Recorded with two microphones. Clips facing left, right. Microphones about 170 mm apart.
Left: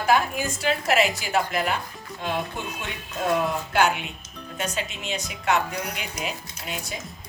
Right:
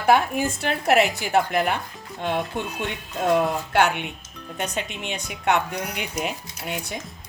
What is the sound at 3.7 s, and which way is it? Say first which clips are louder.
Speech: right 1 dB; 65° right (ahead or behind).